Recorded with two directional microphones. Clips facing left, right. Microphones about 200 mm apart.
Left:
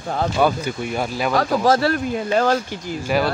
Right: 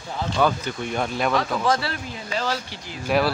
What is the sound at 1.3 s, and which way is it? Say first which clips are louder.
Speech: left 8 dB; 40° left (ahead or behind).